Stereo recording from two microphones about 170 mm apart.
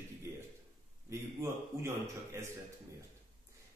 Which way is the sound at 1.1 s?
15° right (ahead or behind).